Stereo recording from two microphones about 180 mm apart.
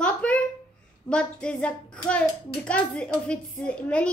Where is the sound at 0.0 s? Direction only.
5° left (ahead or behind).